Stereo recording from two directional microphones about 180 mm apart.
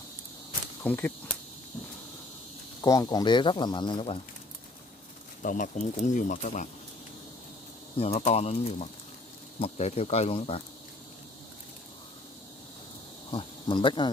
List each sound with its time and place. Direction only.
0.8 s cricket: 10° left (ahead or behind)
2.8 s speech: 20° left (ahead or behind)
5.4 s speech: 50° left (ahead or behind)
8.0 s speech: 35° left (ahead or behind)
13.3 s speech: 25° left (ahead or behind)